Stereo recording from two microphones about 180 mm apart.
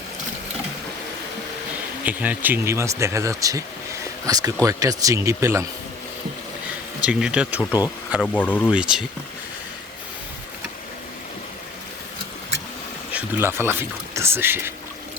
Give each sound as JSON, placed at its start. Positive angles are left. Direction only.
{"t": 2.0, "sound": "speech", "side_deg": -10}
{"t": 7.0, "sound": "speech", "side_deg": -5}
{"t": 8.2, "sound": "speech", "side_deg": 10}
{"t": 8.7, "sound": "speech", "side_deg": -5}
{"t": 13.1, "sound": "speech", "side_deg": -10}